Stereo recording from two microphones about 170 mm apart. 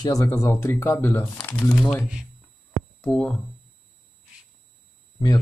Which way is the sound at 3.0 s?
5° left (ahead or behind).